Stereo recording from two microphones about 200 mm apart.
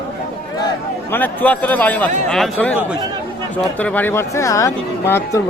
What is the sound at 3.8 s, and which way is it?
Speech, 10° left (ahead or behind).